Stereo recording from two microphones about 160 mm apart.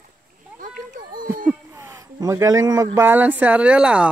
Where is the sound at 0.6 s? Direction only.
55° right (ahead or behind).